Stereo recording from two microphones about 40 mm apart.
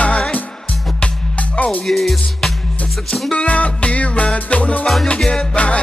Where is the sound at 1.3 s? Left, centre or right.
Left.